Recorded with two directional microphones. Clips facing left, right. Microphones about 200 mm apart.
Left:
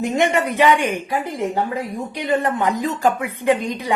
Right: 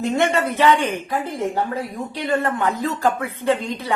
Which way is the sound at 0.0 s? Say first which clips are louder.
Left 1 dB; 15° left (ahead or behind).